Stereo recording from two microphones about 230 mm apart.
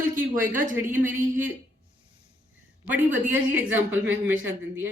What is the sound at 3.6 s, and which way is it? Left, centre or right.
Speech, centre.